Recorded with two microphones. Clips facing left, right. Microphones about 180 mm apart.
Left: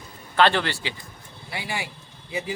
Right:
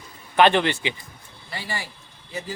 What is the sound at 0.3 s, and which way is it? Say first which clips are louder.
Speech: right 3 dB; 20° right (ahead or behind).